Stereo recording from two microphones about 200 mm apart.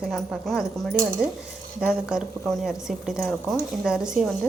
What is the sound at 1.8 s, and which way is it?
A woman's voice, centre (ahead or behind).